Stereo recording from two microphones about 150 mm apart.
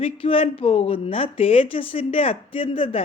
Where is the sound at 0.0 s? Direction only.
40° left (ahead or behind).